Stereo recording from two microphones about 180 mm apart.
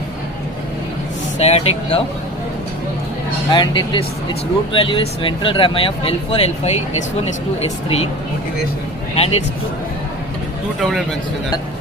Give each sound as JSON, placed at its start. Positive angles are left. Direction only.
{"t": 1.4, "sound": "speech", "side_deg": 35}
{"t": 3.5, "sound": "speech", "side_deg": 25}
{"t": 9.1, "sound": "speech", "side_deg": 35}